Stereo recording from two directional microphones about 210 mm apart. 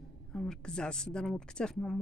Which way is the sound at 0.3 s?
Centre (ahead or behind).